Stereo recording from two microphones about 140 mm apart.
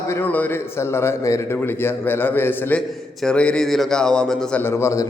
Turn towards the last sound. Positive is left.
turn(degrees=20)  # may be behind; listen again after turning